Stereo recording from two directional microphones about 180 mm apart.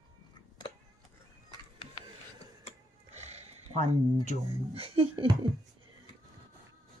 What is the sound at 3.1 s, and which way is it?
Wild animals, 35° right (ahead or behind).